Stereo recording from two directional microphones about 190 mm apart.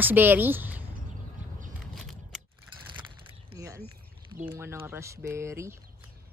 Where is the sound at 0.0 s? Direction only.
10° right (ahead or behind).